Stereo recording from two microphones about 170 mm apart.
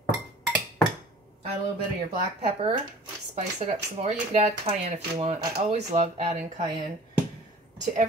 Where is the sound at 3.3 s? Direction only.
40° right (ahead or behind).